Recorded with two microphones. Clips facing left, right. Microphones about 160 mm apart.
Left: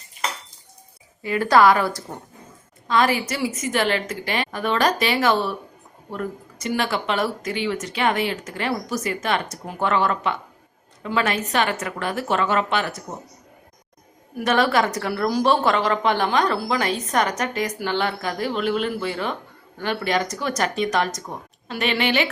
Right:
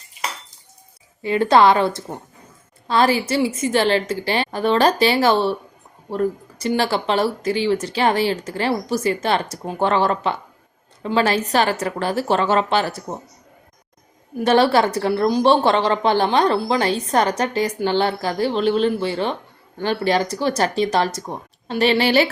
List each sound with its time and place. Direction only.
1.2 s a woman's voice: 25° right (ahead or behind)
14.3 s a woman's voice: 30° right (ahead or behind)